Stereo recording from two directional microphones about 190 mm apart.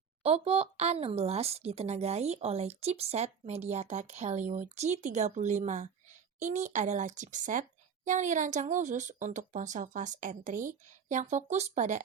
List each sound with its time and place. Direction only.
0.2 s a woman's voice: 30° right (ahead or behind)